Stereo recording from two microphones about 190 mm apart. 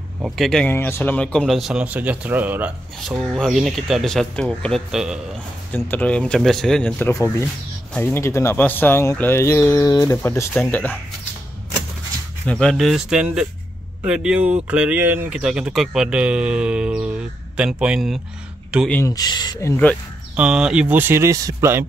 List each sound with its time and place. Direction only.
0.2 s speech: centre (ahead or behind)
5.9 s speech: 10° left (ahead or behind)
12.4 s speech: 5° left (ahead or behind)
18.9 s speech: 15° left (ahead or behind)
20.3 s speech: 5° right (ahead or behind)